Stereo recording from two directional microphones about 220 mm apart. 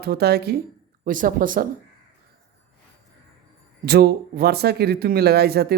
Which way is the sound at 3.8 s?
45° right (ahead or behind).